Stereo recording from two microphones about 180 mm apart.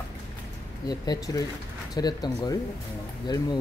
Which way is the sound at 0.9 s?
20° left (ahead or behind).